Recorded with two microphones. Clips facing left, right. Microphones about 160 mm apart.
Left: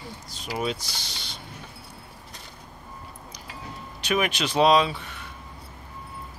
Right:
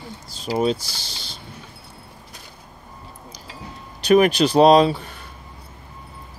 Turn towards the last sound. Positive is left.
turn(degrees=-35)  # may be behind; listen again after turning